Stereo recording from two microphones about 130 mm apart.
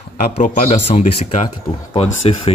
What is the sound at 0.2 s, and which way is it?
Speech, 75° left (ahead or behind).